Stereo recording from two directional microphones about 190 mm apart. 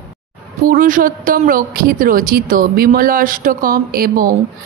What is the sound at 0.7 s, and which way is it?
A woman's voice, 45° right (ahead or behind).